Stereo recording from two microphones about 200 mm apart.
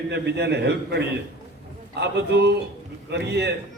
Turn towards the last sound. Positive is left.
turn(degrees=-60)  # may be behind; listen again after turning